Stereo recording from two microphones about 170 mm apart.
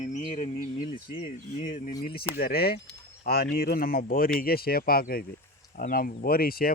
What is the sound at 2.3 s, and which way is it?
Speech, 60° left (ahead or behind).